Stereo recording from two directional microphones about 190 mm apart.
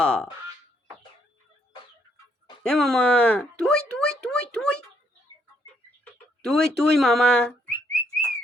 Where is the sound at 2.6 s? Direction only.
5° left (ahead or behind).